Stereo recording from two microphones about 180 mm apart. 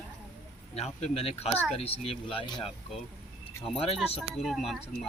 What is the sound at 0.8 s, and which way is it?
Speech, 35° left (ahead or behind).